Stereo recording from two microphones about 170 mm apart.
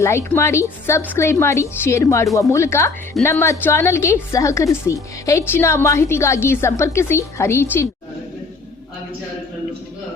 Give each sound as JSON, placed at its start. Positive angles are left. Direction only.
{"t": 0.0, "sound": "a woman's voice", "side_deg": 15}